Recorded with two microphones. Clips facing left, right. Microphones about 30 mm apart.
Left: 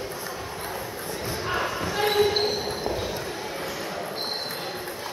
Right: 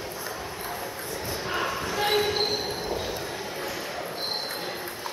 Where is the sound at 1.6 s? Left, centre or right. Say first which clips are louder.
Left 1 dB; centre.